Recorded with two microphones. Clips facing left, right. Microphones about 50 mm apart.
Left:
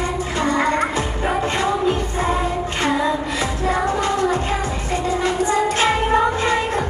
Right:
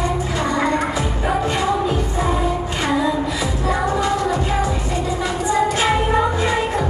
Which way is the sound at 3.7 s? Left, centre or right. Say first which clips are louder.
Right 1 dB; left.